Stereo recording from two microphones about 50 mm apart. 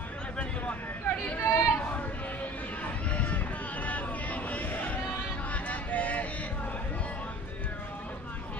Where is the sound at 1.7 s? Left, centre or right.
Left.